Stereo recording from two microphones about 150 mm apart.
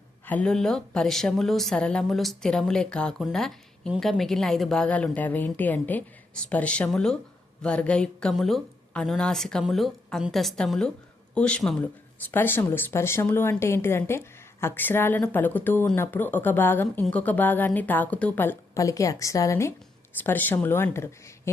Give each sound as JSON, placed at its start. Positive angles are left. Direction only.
{"t": 0.3, "sound": "a woman's voice", "side_deg": 5}